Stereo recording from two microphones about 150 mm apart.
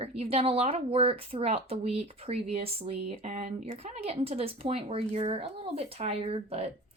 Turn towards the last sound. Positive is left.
turn(degrees=-40)  # may be behind; listen again after turning